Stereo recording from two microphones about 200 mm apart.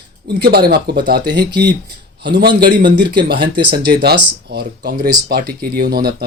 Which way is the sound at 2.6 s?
50° right (ahead or behind).